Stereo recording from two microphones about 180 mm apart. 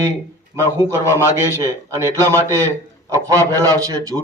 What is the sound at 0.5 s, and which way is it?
A man's voice, 15° right (ahead or behind).